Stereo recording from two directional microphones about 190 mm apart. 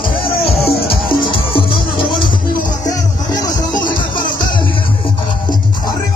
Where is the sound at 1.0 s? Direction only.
25° left (ahead or behind).